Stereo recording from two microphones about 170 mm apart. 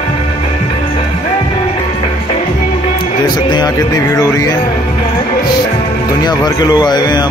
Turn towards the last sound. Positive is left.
turn(degrees=25)  # may be behind; listen again after turning